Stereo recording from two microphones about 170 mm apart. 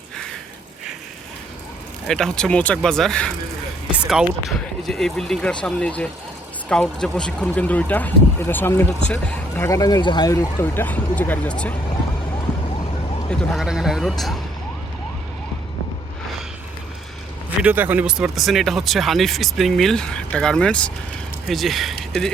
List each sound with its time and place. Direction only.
2.0 s speech: 5° left (ahead or behind)
3.9 s speech: 5° right (ahead or behind)
9.6 s speech: 20° left (ahead or behind)
13.3 s speech: centre (ahead or behind)
17.6 s speech: 10° right (ahead or behind)